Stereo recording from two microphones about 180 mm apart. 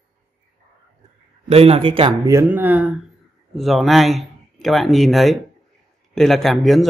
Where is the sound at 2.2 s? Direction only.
15° right (ahead or behind).